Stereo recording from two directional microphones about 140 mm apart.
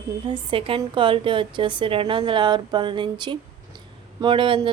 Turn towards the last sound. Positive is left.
turn(degrees=-35)  # may be behind; listen again after turning